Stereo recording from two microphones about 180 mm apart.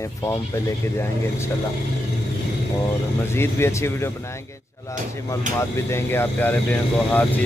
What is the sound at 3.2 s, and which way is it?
Speech, 15° left (ahead or behind).